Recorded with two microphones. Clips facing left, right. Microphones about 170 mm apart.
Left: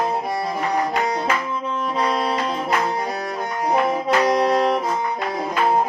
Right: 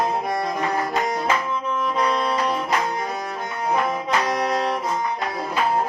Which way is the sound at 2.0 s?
35° left (ahead or behind).